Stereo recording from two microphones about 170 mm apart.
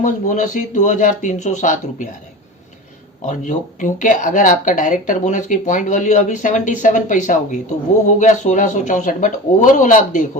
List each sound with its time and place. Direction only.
0.0 s speech: 50° left (ahead or behind)
3.2 s speech: 50° left (ahead or behind)